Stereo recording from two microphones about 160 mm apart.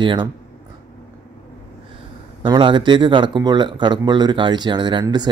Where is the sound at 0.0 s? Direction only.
30° right (ahead or behind).